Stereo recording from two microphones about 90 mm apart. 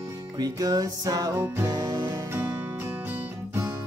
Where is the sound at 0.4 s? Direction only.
45° right (ahead or behind).